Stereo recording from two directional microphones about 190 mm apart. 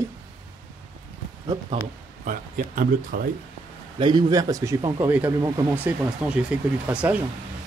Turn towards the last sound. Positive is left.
turn(degrees=-5)  # may be behind; listen again after turning